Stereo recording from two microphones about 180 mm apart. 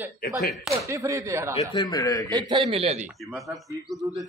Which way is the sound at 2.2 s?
20° right (ahead or behind).